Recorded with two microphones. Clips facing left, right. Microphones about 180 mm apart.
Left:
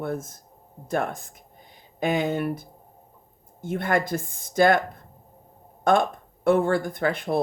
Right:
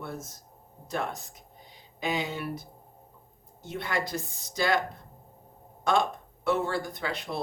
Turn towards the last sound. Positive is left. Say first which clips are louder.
# left 9 dB
turn(degrees=50)  # may be behind; listen again after turning